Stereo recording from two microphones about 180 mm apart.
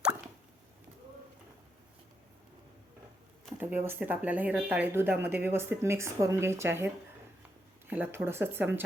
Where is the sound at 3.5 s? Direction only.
10° right (ahead or behind).